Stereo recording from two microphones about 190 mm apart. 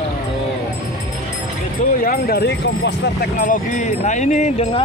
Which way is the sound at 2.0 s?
50° left (ahead or behind).